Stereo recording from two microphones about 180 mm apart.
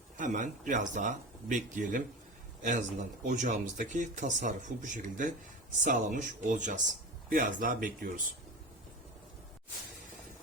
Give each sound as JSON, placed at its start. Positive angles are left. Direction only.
{"t": 0.2, "sound": "speech", "side_deg": -45}